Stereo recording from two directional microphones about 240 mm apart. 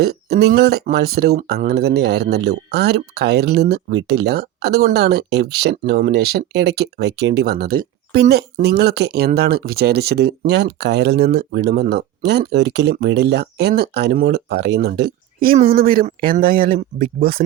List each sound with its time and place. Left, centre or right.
0.0 s speech: right